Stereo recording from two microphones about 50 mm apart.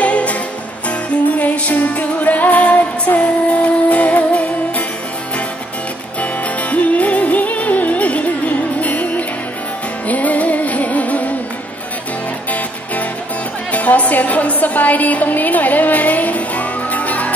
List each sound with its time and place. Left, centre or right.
0.0 s music: left
6.2 s music: left
13.7 s music: left